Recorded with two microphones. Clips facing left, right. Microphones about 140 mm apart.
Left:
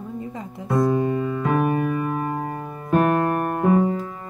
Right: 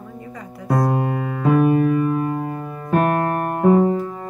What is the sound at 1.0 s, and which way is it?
Keyboard, 75° right (ahead or behind).